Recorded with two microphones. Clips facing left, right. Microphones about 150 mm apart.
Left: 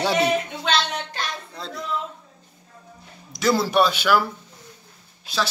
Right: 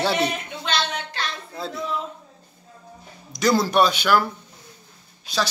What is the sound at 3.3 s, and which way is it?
Speech, centre (ahead or behind).